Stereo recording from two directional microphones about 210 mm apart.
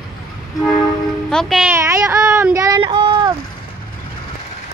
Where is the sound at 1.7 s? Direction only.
15° right (ahead or behind).